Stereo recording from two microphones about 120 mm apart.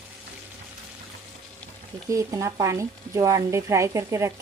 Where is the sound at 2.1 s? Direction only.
25° right (ahead or behind).